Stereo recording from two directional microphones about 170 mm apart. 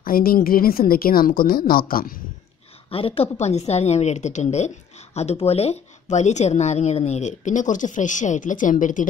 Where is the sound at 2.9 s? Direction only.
35° left (ahead or behind).